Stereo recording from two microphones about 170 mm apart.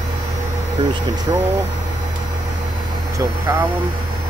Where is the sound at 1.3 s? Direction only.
20° right (ahead or behind).